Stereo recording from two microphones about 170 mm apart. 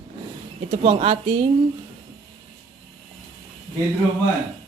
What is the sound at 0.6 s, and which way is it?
Speech, 40° right (ahead or behind).